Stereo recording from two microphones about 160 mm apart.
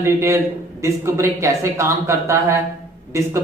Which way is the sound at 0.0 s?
15° right (ahead or behind).